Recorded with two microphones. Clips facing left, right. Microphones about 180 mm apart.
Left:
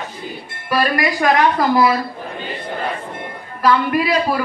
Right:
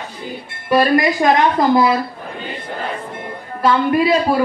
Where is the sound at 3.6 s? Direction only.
25° right (ahead or behind).